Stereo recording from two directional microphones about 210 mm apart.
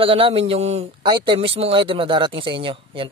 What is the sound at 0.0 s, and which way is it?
A man's voice, 25° right (ahead or behind).